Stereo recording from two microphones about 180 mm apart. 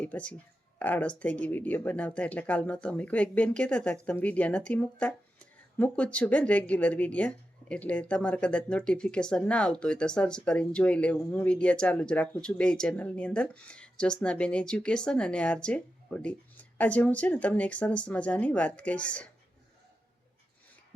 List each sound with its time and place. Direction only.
0.0 s speech: 5° left (ahead or behind)